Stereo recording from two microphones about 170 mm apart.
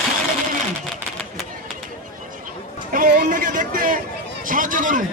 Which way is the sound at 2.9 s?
55° right (ahead or behind).